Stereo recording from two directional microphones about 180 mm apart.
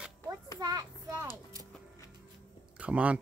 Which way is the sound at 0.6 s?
20° right (ahead or behind).